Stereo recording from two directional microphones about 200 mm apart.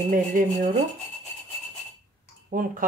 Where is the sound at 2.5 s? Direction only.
45° right (ahead or behind).